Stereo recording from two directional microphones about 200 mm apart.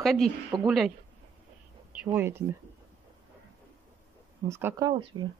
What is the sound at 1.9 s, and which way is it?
Speech, 10° right (ahead or behind).